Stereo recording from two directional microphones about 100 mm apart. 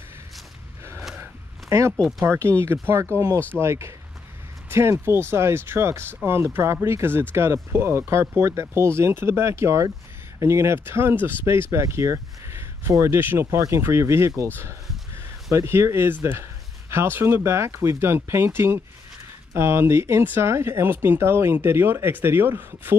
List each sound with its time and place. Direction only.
1.7 s speech: 30° right (ahead or behind)
2.0 s speech: centre (ahead or behind)
2.2 s speech: 30° right (ahead or behind)
15.5 s speech: 30° right (ahead or behind)